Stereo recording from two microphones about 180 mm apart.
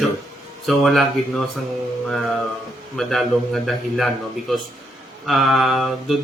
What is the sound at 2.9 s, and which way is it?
A man's voice, centre (ahead or behind).